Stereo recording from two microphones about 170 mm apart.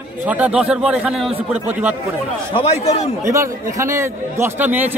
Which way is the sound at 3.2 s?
15° right (ahead or behind).